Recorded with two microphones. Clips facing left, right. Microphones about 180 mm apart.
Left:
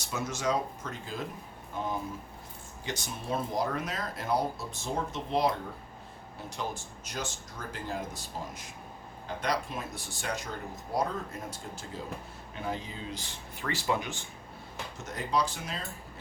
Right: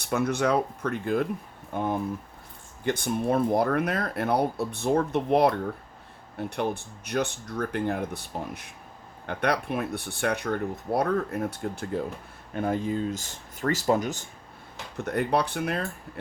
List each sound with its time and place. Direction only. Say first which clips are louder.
0.0 s speech: right 8 dB; 60° right (ahead or behind); by 14.3 s 40° right (ahead or behind)
14.9 s speech: right 6 dB; 60° right (ahead or behind)